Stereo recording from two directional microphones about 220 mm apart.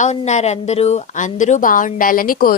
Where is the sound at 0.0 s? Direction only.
30° left (ahead or behind).